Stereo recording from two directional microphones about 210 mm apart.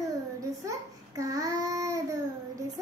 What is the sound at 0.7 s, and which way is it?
Child singing, 15° right (ahead or behind).